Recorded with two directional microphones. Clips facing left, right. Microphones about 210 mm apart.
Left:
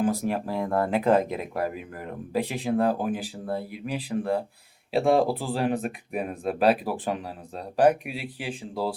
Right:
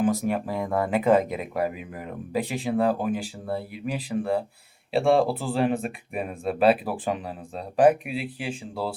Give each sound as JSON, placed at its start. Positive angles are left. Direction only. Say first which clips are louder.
{"t": 0.0, "sound": "speech", "louder": "right 1 dB", "side_deg": 0}